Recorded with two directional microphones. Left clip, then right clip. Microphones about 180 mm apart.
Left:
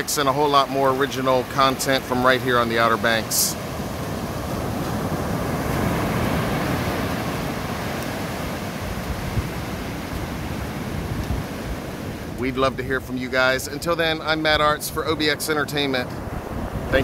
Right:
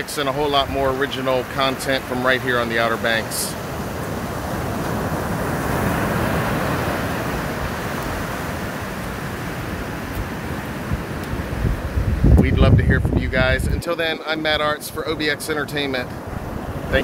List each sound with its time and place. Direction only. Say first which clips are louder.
0.2 s speech: left 1 dB; 25° left (ahead or behind)
12.4 s speech: right 2 dB; 25° left (ahead or behind)